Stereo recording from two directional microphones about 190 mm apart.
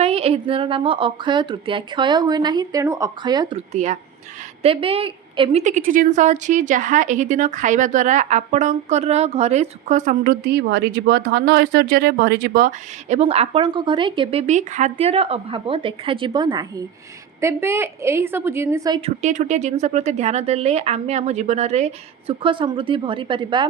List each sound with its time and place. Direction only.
0.0 s speech: 30° right (ahead or behind)
3.7 s a woman's voice: 40° right (ahead or behind)
13.1 s a woman's voice: 35° right (ahead or behind); by 18.9 s 15° right (ahead or behind)
19.0 s a woman's voice: 40° right (ahead or behind)